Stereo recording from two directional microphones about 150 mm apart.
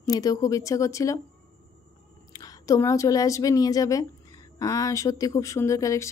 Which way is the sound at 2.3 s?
25° left (ahead or behind).